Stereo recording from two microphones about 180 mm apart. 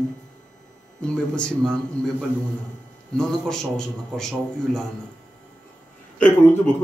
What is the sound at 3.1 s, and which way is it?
Speech, 5° left (ahead or behind).